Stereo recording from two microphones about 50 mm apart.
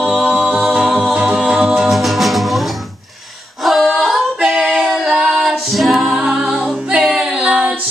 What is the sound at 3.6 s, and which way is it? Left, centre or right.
Singing, centre.